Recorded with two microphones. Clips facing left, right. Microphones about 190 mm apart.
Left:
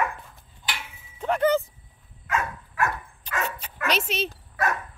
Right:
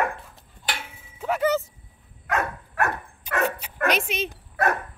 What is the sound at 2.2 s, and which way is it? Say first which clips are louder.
Dog: right 2 dB; 65° right (ahead or behind).